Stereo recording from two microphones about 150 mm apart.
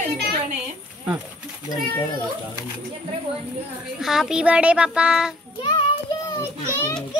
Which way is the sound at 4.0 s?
5° right (ahead or behind).